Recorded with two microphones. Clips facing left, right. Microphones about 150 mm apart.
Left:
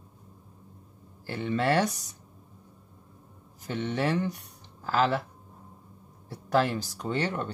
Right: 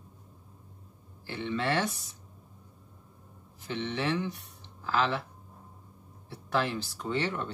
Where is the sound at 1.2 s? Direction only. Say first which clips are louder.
Left 4 dB; 45° left (ahead or behind).